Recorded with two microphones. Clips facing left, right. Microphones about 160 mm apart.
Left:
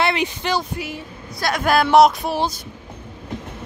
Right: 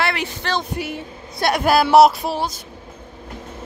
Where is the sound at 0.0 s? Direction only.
20° left (ahead or behind).